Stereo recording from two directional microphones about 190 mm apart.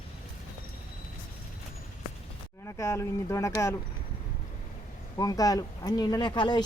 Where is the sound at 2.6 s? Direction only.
15° left (ahead or behind).